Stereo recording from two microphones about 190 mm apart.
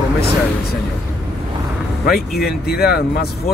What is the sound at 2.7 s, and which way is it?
Speech, 55° left (ahead or behind).